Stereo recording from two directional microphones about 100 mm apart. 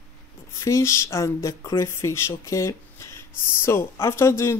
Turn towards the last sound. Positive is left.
turn(degrees=25)  # may be behind; listen again after turning